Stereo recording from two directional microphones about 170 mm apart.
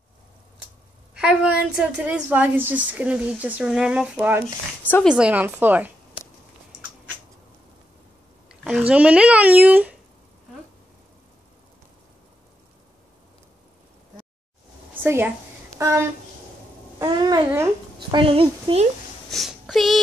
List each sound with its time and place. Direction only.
1.2 s a woman's voice: 5° right (ahead or behind)
8.5 s speech: 5° right (ahead or behind)
15.0 s a woman's voice: 10° right (ahead or behind)
17.0 s speech: 25° right (ahead or behind)
17.9 s a woman's voice: 30° right (ahead or behind)
19.3 s speech: centre (ahead or behind)